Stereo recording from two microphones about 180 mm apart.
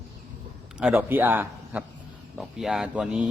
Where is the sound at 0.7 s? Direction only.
10° right (ahead or behind).